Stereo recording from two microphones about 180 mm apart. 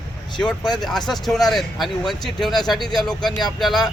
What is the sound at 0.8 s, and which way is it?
Speech, centre (ahead or behind).